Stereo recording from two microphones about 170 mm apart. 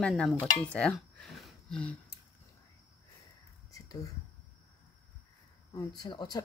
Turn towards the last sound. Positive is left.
turn(degrees=25)  # may be behind; listen again after turning